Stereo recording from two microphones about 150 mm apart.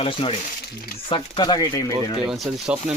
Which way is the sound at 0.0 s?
35° left (ahead or behind).